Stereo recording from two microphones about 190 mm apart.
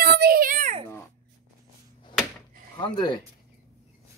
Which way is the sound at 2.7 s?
25° left (ahead or behind).